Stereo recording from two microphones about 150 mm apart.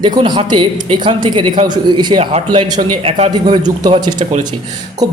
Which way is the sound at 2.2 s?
45° right (ahead or behind).